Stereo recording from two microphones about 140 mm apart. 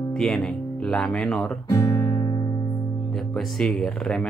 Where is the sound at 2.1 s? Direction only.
35° left (ahead or behind).